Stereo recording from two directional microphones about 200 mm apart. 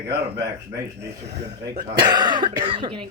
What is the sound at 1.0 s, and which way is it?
Speech, 60° right (ahead or behind).